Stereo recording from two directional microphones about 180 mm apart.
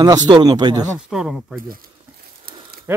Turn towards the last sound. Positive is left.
turn(degrees=-10)  # may be behind; listen again after turning